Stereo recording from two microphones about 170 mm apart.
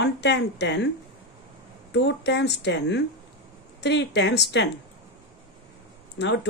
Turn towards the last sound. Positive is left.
turn(degrees=90)